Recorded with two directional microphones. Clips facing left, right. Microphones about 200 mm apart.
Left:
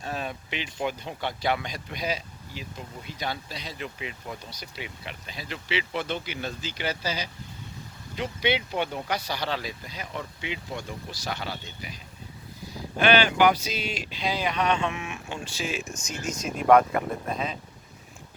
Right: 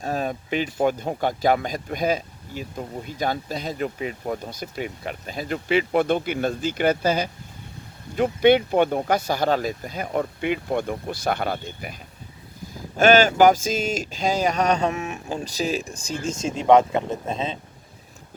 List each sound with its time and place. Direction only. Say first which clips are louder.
0.0 s speech: right 7 dB; 40° right (ahead or behind)
13.0 s speech: right 6 dB; 45° right (ahead or behind); by 17.6 s 25° right (ahead or behind)